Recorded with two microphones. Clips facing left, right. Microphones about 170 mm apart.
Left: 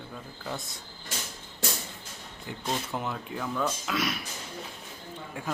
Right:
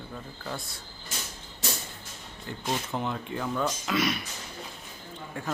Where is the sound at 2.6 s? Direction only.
5° left (ahead or behind).